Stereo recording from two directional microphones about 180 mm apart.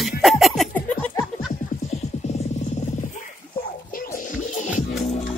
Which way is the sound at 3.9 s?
50° left (ahead or behind).